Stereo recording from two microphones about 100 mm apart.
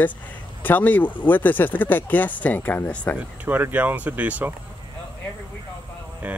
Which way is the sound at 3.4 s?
20° right (ahead or behind).